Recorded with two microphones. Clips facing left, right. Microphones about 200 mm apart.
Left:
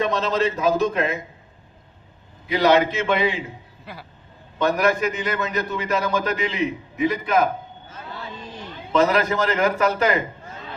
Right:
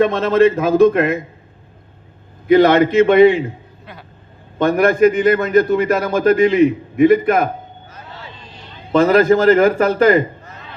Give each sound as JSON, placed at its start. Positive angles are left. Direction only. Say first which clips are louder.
{"t": 0.0, "sound": "a man's voice", "louder": "right 9 dB", "side_deg": -55}
{"t": 2.5, "sound": "a man's voice", "louder": "right 7 dB", "side_deg": -55}
{"t": 3.9, "sound": "speech", "louder": "even", "side_deg": 5}
{"t": 4.5, "sound": "a man's voice", "louder": "right 6 dB", "side_deg": -50}
{"t": 8.9, "sound": "a man's voice", "louder": "right 8 dB", "side_deg": -50}
{"t": 10.4, "sound": "chop", "louder": "left 1 dB", "side_deg": 30}